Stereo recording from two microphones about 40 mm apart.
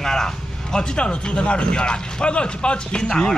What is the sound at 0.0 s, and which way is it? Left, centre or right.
Speech, centre.